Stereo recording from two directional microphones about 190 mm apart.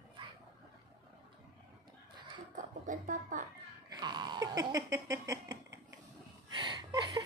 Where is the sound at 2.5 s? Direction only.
45° right (ahead or behind).